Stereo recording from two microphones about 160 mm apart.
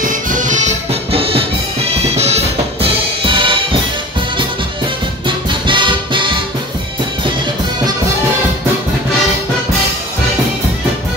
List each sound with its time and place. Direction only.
0.0 s music: 55° right (ahead or behind)
1.1 s music: 35° right (ahead or behind)
5.7 s music: 30° right (ahead or behind)